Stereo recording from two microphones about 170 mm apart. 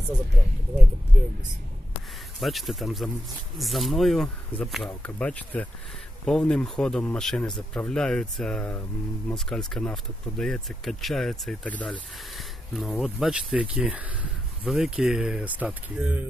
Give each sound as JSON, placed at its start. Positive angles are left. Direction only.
{"t": 2.4, "sound": "speech", "side_deg": 0}